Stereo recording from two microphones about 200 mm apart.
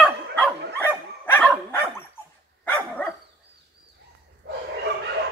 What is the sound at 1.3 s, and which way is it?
Dog, 10° left (ahead or behind).